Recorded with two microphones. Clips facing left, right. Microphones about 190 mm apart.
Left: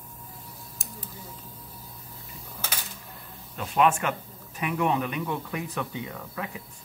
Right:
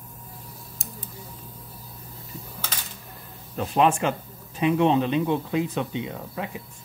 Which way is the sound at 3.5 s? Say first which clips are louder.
Right 2 dB; 35° right (ahead or behind).